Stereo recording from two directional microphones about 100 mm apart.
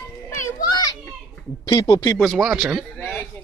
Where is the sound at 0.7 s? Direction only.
40° left (ahead or behind).